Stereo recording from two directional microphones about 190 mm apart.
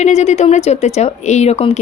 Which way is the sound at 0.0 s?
35° left (ahead or behind).